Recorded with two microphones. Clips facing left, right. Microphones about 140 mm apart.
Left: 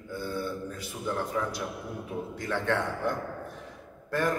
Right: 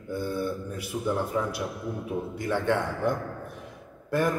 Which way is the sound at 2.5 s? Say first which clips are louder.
Right 3 dB; 15° right (ahead or behind).